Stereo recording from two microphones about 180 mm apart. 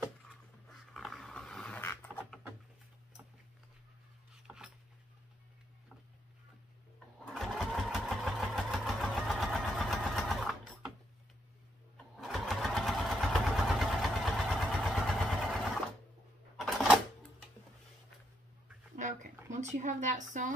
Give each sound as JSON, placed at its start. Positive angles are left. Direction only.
{"t": 0.9, "sound": "dog", "side_deg": 0}
{"t": 7.3, "sound": "engine", "side_deg": 0}
{"t": 12.2, "sound": "vehicle", "side_deg": 0}
{"t": 16.5, "sound": "a sound", "side_deg": 0}
{"t": 18.9, "sound": "a sound", "side_deg": -45}
{"t": 19.5, "sound": "speech", "side_deg": -45}